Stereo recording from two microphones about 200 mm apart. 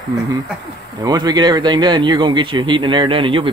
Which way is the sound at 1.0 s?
20° right (ahead or behind).